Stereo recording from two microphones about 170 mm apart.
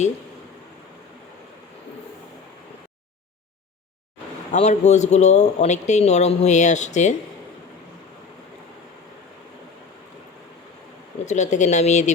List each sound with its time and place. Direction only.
4.5 s speech: 40° left (ahead or behind)
11.3 s speech: 45° left (ahead or behind)